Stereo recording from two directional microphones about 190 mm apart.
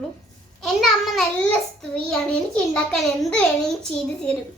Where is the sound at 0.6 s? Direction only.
Centre (ahead or behind).